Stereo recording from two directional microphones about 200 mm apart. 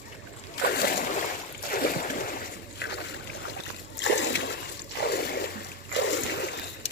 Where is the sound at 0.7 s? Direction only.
50° left (ahead or behind).